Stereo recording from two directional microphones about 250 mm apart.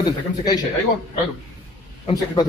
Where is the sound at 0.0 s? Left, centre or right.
Centre.